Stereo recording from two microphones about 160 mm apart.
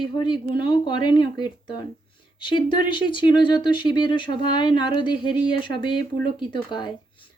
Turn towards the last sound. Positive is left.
turn(degrees=30)  # may be behind; listen again after turning